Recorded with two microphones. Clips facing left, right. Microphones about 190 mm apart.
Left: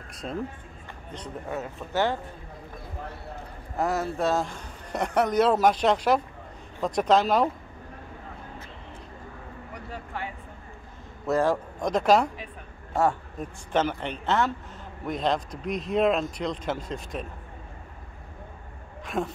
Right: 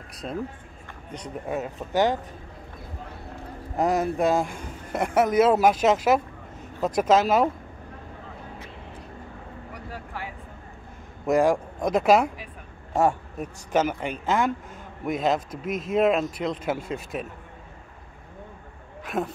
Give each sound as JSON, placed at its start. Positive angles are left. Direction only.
{"t": 0.2, "sound": "speech", "side_deg": -5}
{"t": 1.1, "sound": "speech", "side_deg": -15}
{"t": 3.7, "sound": "speech", "side_deg": -20}
{"t": 9.9, "sound": "a sound", "side_deg": -5}
{"t": 11.2, "sound": "speech", "side_deg": -15}
{"t": 12.9, "sound": "speech", "side_deg": -15}
{"t": 19.0, "sound": "speech", "side_deg": 0}